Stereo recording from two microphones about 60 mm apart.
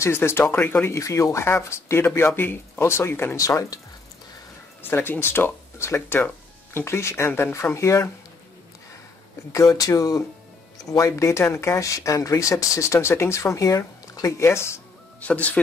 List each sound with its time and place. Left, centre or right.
0.0 s speech: left
0.9 s speech: left
3.3 s speech: left
4.8 s speech: left
7.2 s speech: left
7.7 s speech: left
9.5 s speech: left
10.8 s speech: left
13.4 s speech: left
15.1 s speech: left